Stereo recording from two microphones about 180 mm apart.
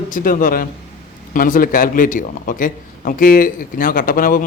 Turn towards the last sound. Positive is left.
turn(degrees=50)  # may be behind; listen again after turning